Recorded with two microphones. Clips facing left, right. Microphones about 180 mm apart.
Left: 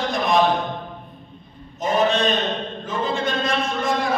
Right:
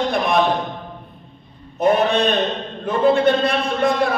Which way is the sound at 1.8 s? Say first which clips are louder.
Right 3 dB; 60° right (ahead or behind).